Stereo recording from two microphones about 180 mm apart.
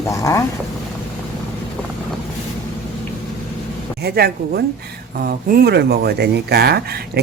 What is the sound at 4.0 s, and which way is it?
Speech, 60° right (ahead or behind).